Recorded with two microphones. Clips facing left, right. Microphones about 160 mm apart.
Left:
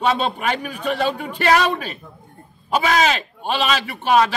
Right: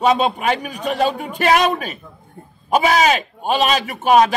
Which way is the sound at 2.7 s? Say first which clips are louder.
Right 3 dB; 45° right (ahead or behind).